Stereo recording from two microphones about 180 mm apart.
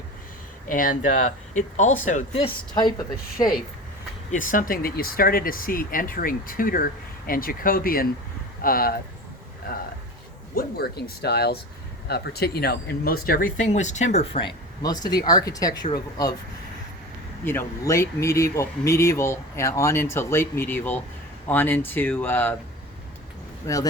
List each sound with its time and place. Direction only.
0.7 s speech: 50° left (ahead or behind)
2.3 s speech: 25° left (ahead or behind)
3.3 s speech: 50° left (ahead or behind)
10.5 s speech: 60° left (ahead or behind); by 14.4 s 35° left (ahead or behind)
14.8 s speech: 20° left (ahead or behind)
17.4 s speech: 10° left (ahead or behind)